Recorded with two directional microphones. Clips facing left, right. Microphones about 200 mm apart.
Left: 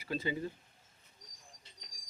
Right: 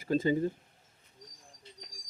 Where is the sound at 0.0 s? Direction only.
45° right (ahead or behind).